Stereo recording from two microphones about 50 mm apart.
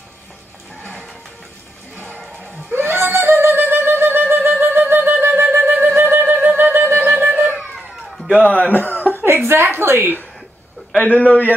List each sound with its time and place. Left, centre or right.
2.7 s music: right
7.4 s a sound: centre
8.3 s chuckle: left
9.5 s a woman's voice: right
11.0 s a man's voice: left